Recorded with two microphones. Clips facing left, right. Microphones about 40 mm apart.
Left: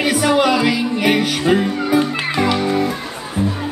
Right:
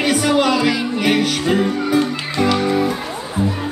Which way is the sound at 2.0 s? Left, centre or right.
Centre.